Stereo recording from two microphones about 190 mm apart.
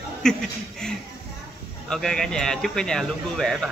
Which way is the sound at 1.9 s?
5° left (ahead or behind).